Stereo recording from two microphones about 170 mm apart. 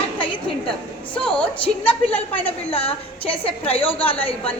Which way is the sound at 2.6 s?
35° left (ahead or behind).